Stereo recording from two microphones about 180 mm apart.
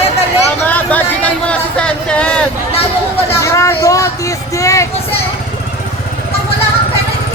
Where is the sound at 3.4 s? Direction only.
15° left (ahead or behind).